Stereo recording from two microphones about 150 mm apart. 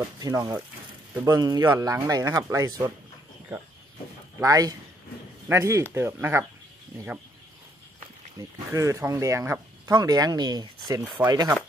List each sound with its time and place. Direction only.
0.2 s speech: 25° right (ahead or behind)
4.4 s speech: 25° right (ahead or behind)
8.4 s speech: 20° right (ahead or behind)